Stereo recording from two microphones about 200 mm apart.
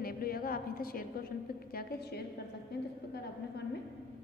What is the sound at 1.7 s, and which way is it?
Speech, 50° left (ahead or behind).